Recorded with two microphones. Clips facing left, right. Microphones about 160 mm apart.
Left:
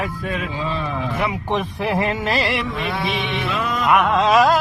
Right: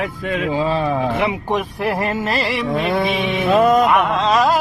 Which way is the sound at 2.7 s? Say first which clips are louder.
Right 5 dB; 50° right (ahead or behind).